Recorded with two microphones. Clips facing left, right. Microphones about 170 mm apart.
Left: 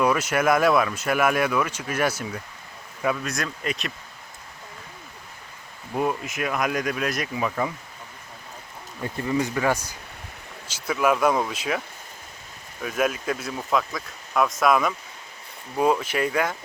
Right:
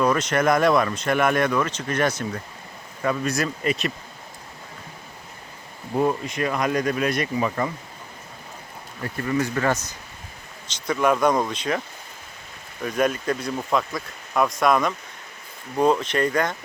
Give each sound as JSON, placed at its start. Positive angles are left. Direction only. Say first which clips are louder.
{"t": 0.0, "sound": "speech", "louder": "right 1 dB", "side_deg": 10}
{"t": 5.9, "sound": "speech", "louder": "right 3 dB", "side_deg": 5}
{"t": 9.0, "sound": "speech", "louder": "right 1 dB", "side_deg": 15}
{"t": 12.8, "sound": "speech", "louder": "right 2 dB", "side_deg": 5}